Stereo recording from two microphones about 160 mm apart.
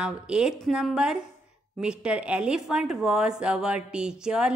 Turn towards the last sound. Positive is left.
turn(degrees=-5)  # may be behind; listen again after turning